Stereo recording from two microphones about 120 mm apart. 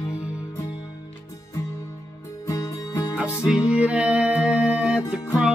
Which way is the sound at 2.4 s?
30° left (ahead or behind).